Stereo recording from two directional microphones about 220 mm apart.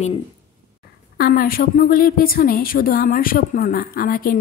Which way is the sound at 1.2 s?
45° left (ahead or behind).